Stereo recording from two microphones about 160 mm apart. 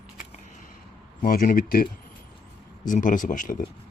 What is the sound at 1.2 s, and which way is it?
Speech, 60° left (ahead or behind).